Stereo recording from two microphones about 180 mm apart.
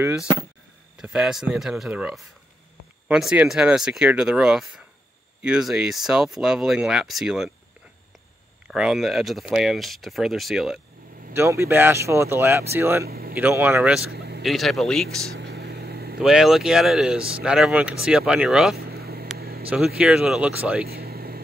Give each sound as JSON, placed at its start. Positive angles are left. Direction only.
{"t": 0.9, "sound": "speech", "side_deg": -5}
{"t": 8.6, "sound": "speech", "side_deg": -5}
{"t": 11.3, "sound": "speech", "side_deg": -15}
{"t": 13.0, "sound": "speech", "side_deg": -55}
{"t": 13.3, "sound": "speech", "side_deg": -10}
{"t": 14.1, "sound": "vehicle", "side_deg": -65}
{"t": 14.4, "sound": "speech", "side_deg": 0}
{"t": 15.3, "sound": "vehicle", "side_deg": -65}
{"t": 16.2, "sound": "speech", "side_deg": 0}
{"t": 18.8, "sound": "vehicle", "side_deg": -60}
{"t": 20.0, "sound": "speech", "side_deg": -5}
{"t": 20.9, "sound": "vehicle", "side_deg": -60}